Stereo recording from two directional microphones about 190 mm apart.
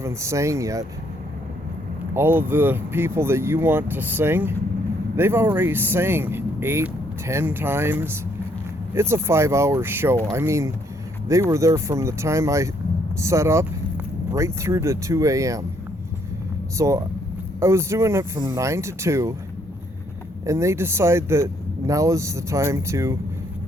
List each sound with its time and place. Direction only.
0.0 s speech: 15° right (ahead or behind)
2.1 s speech: 10° right (ahead or behind)
16.7 s speech: 15° right (ahead or behind)
20.4 s speech: 15° right (ahead or behind)